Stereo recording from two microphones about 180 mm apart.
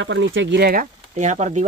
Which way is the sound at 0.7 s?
45° right (ahead or behind).